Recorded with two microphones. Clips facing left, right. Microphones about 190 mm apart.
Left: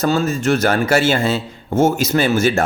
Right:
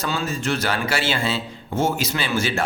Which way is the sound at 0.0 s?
45° left (ahead or behind).